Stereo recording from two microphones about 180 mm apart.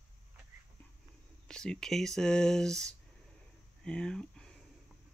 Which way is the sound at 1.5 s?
5° left (ahead or behind).